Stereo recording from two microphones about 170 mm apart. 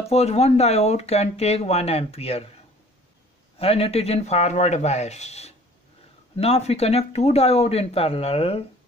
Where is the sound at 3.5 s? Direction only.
35° left (ahead or behind).